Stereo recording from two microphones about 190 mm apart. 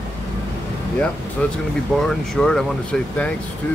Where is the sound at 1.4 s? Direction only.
5° left (ahead or behind).